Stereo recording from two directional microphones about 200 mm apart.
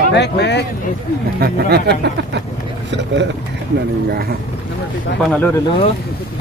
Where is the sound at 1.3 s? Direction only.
50° right (ahead or behind).